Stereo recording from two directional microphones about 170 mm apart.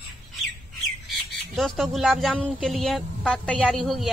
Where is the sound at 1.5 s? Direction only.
Centre (ahead or behind).